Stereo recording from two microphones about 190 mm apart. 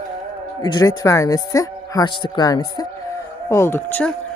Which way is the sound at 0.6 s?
20° left (ahead or behind).